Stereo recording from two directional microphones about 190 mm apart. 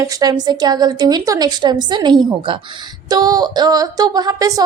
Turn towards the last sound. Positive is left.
turn(degrees=-20)  # may be behind; listen again after turning